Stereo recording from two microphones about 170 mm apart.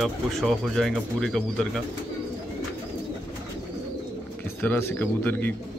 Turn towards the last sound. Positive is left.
turn(degrees=10)  # may be behind; listen again after turning